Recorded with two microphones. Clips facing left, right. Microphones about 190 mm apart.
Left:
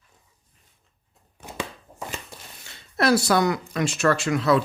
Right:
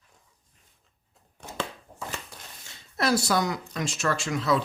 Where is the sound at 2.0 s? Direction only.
15° left (ahead or behind).